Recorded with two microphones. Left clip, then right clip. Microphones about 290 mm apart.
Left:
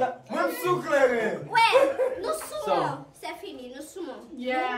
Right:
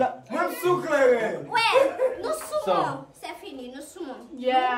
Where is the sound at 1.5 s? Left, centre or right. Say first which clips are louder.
Left 2 dB; centre.